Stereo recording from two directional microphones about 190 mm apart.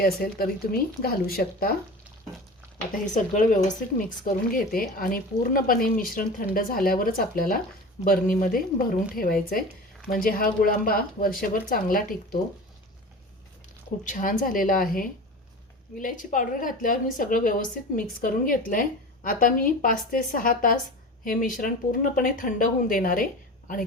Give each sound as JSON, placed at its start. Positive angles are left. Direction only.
{"t": 0.0, "sound": "a woman's voice", "side_deg": 50}
{"t": 3.3, "sound": "a woman's voice", "side_deg": 45}
{"t": 14.0, "sound": "a woman's voice", "side_deg": 45}